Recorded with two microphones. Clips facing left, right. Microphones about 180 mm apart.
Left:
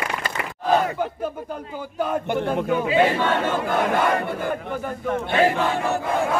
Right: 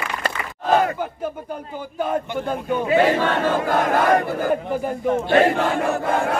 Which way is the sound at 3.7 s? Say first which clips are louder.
Right 1 dB; 65° right (ahead or behind).